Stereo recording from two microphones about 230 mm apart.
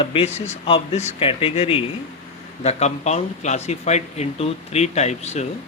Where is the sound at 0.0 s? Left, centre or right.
Left.